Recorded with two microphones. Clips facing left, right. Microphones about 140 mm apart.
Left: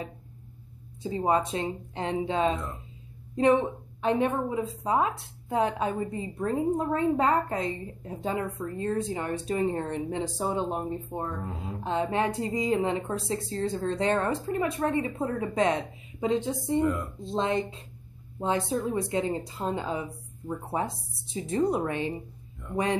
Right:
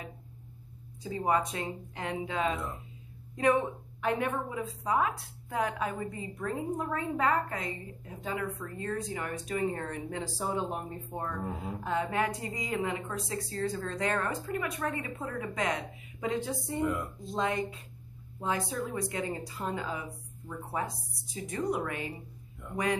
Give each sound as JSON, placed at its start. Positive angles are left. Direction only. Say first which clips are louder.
{"t": 1.0, "sound": "a woman's voice", "louder": "left 3 dB", "side_deg": 25}